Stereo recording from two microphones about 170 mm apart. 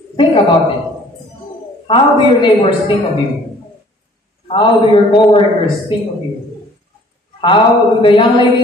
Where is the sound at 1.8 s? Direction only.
30° left (ahead or behind).